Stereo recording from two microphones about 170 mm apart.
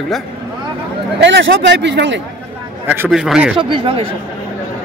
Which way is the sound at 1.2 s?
90° right.